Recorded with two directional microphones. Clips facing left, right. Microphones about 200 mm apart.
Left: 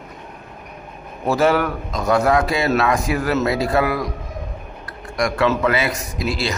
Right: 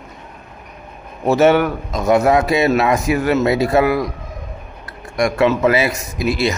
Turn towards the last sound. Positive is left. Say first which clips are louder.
# right 4 dB
turn(degrees=25)  # may be behind; listen again after turning